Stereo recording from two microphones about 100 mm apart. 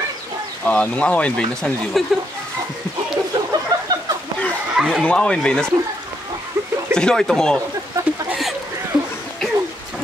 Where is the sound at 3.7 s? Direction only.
40° right (ahead or behind).